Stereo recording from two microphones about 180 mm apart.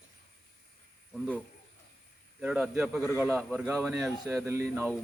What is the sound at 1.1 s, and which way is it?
Speech, 5° left (ahead or behind).